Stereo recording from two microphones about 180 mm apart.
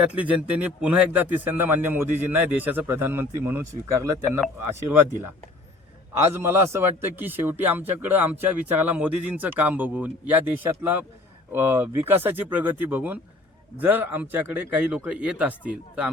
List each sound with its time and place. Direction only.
0.1 s a man's voice: 5° right (ahead or behind)
6.2 s a man's voice: 15° right (ahead or behind)